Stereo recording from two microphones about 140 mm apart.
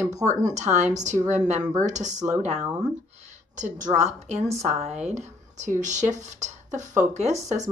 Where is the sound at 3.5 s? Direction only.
65° right (ahead or behind).